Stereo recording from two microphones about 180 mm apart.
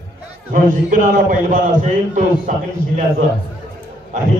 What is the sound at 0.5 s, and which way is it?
A man's voice, 50° right (ahead or behind).